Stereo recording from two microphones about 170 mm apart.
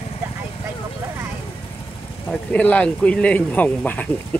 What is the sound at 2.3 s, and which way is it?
A man's voice, 5° left (ahead or behind).